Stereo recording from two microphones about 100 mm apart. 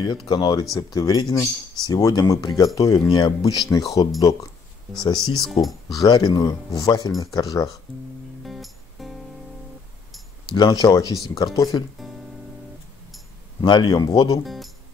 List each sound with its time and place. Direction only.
0.3 s speech: 40° left (ahead or behind)
3.2 s speech: 45° left (ahead or behind)
4.9 s speech: 45° left (ahead or behind)
5.5 s speech: centre (ahead or behind)
5.9 s speech: 45° left (ahead or behind)
8.5 s music: centre (ahead or behind)
10.5 s speech: 45° left (ahead or behind)
13.6 s speech: 50° left (ahead or behind)
14.4 s speech: centre (ahead or behind)